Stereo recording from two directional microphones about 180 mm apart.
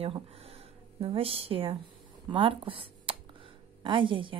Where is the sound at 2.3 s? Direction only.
30° right (ahead or behind).